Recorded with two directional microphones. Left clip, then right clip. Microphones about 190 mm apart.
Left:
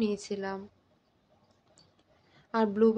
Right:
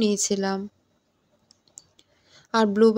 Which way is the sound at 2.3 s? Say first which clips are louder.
Right 7 dB; 45° right (ahead or behind).